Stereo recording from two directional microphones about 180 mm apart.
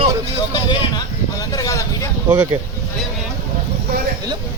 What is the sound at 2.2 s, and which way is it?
Speech, 10° right (ahead or behind).